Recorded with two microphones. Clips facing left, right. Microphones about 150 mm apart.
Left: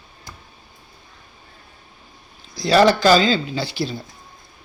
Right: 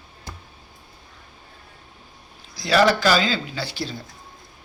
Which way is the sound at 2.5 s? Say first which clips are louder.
Left 3 dB; 30° left (ahead or behind).